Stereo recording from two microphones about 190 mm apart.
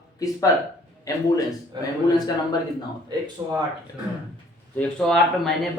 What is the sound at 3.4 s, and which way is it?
Speech, 20° right (ahead or behind).